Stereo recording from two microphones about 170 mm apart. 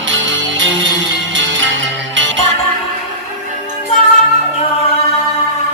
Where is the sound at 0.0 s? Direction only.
90° right.